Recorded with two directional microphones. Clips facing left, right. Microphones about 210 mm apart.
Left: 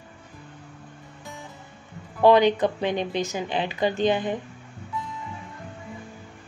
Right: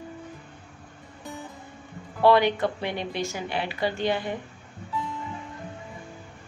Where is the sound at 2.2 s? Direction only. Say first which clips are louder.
Left 3 dB; 20° left (ahead or behind).